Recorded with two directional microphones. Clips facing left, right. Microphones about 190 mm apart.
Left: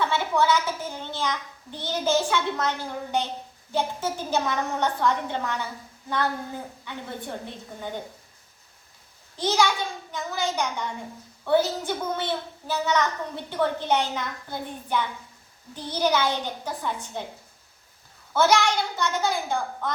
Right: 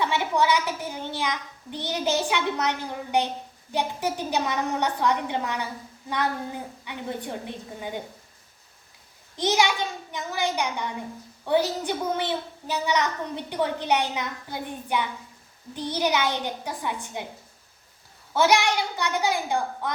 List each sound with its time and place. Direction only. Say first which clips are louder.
0.0 s a child's voice: even; 15° right (ahead or behind)
6.8 s a child's voice: right 3 dB; 15° right (ahead or behind)
9.4 s a child's voice: even; 20° right (ahead or behind)
18.3 s a child's voice: even; 15° right (ahead or behind)